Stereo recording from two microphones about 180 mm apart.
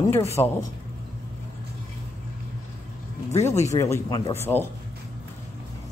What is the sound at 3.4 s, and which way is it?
Speech, 40° left (ahead or behind).